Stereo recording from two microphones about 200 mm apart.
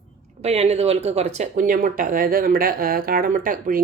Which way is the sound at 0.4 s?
30° right (ahead or behind).